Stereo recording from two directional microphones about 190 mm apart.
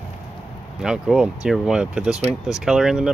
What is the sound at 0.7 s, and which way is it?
Speech, 5° right (ahead or behind).